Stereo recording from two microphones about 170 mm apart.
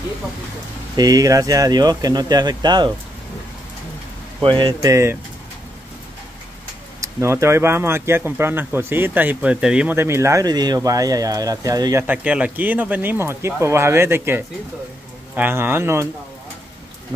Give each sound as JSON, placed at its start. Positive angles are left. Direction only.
{"t": 0.9, "sound": "speech", "side_deg": -20}
{"t": 4.4, "sound": "speech", "side_deg": -30}
{"t": 7.0, "sound": "speech", "side_deg": -15}